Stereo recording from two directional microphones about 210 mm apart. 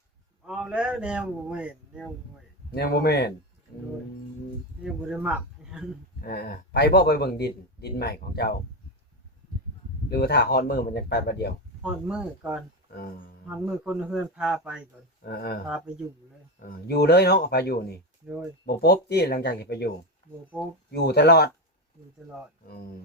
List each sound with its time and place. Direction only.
0.4 s a man's voice: 5° right (ahead or behind)
2.7 s a man's voice: 50° left (ahead or behind)
4.8 s speech: 5° right (ahead or behind)
6.2 s a man's voice: 50° left (ahead or behind)
10.1 s a man's voice: 50° left (ahead or behind)
11.8 s a man's voice: 5° right (ahead or behind)
12.9 s speech: 45° left (ahead or behind)
13.5 s a man's voice: 5° right (ahead or behind)
15.2 s a man's voice: 50° left (ahead or behind)
20.6 s a man's voice: centre (ahead or behind)
20.9 s a man's voice: 50° left (ahead or behind)
22.6 s a man's voice: 45° left (ahead or behind)